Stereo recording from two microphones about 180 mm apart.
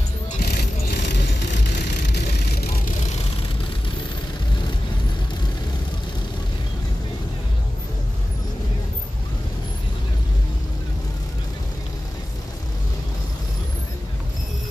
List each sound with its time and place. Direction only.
0.4 s vehicle: 65° left (ahead or behind)